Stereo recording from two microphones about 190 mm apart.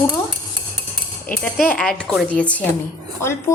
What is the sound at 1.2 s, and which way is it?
A woman's voice, 10° left (ahead or behind).